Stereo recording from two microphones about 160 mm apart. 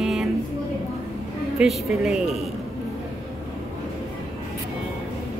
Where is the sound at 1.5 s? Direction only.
5° right (ahead or behind).